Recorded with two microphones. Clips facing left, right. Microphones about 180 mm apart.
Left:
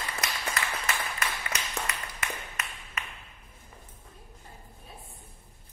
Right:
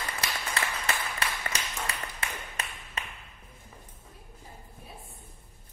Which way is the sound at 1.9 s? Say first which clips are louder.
Even; 30° right (ahead or behind).